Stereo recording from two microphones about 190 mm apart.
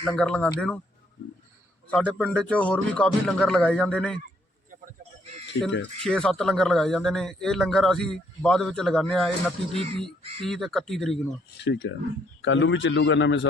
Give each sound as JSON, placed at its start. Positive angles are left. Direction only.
{"t": 0.0, "sound": "a man's voice", "side_deg": 5}
{"t": 1.9, "sound": "a man's voice", "side_deg": 5}
{"t": 6.0, "sound": "a man's voice", "side_deg": 5}
{"t": 9.7, "sound": "speech", "side_deg": -30}
{"t": 10.4, "sound": "a man's voice", "side_deg": 0}
{"t": 11.6, "sound": "a man's voice", "side_deg": 70}